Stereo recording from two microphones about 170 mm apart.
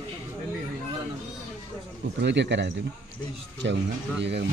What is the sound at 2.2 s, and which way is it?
Speech, 90° right.